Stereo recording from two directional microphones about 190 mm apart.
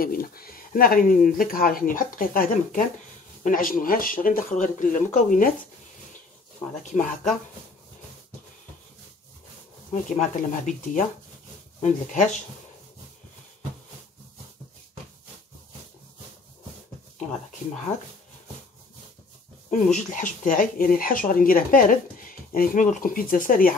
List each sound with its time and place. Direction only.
0.0 s speech: 50° left (ahead or behind)
10.1 s speech: 40° left (ahead or behind)
19.7 s speech: 40° left (ahead or behind)